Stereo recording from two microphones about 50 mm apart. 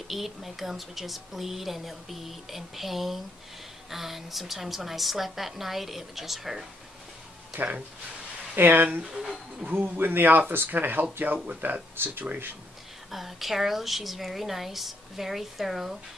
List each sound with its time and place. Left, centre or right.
0.1 s a woman's voice: centre
7.5 s a man's voice: right
9.0 s speech: centre
9.7 s a man's voice: right
11.4 s a man's voice: right
13.1 s a woman's voice: centre